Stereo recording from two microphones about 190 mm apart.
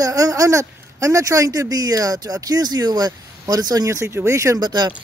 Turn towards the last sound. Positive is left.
turn(degrees=-20)  # may be behind; listen again after turning